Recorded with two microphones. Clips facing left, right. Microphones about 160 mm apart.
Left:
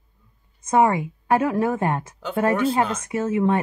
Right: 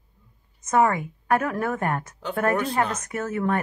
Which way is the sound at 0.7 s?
25° left (ahead or behind).